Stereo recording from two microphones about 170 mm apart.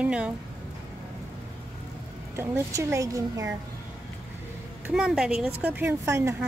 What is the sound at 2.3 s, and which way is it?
A woman's voice, 15° right (ahead or behind).